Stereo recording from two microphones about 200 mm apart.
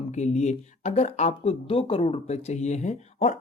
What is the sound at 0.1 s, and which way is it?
Speech, 35° left (ahead or behind).